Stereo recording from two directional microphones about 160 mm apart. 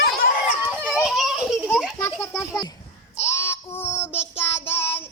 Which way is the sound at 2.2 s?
15° left (ahead or behind).